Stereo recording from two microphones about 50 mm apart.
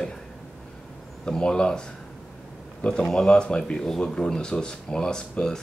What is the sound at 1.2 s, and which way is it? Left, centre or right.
Speech, centre.